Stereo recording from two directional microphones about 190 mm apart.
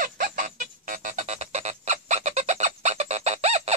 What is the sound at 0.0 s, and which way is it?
Music, 45° right (ahead or behind).